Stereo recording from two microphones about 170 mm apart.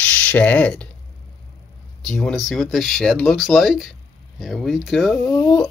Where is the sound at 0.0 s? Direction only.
10° left (ahead or behind).